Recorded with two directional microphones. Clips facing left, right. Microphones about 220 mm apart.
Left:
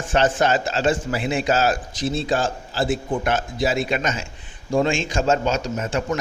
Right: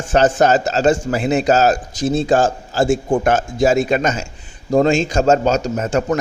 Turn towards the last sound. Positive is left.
turn(degrees=-40)  # may be behind; listen again after turning